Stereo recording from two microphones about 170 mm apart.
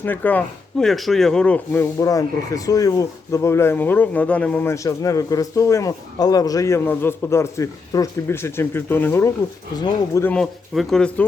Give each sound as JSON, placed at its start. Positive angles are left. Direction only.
{"t": 0.0, "sound": "speech", "side_deg": 10}
{"t": 10.3, "sound": "speech", "side_deg": 0}